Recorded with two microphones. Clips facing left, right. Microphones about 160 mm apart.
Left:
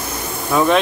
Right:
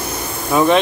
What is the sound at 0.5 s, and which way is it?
Speech, centre (ahead or behind).